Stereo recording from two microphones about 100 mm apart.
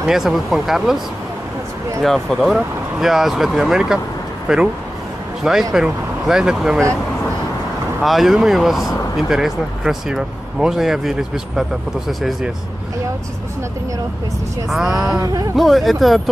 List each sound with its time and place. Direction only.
0.0 s speech: 5° right (ahead or behind)
8.0 s speech: centre (ahead or behind)
15.1 s speech: 35° right (ahead or behind)
15.5 s speech: centre (ahead or behind)